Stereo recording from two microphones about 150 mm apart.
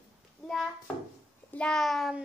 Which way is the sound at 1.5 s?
5° left (ahead or behind).